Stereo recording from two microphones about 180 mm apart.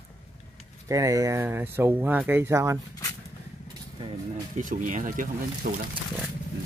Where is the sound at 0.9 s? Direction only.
20° right (ahead or behind).